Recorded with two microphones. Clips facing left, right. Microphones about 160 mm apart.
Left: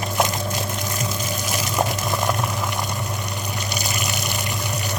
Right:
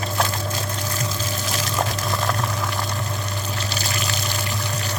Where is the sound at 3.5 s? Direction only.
15° left (ahead or behind).